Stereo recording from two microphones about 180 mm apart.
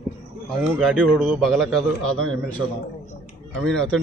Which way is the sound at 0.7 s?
5° right (ahead or behind).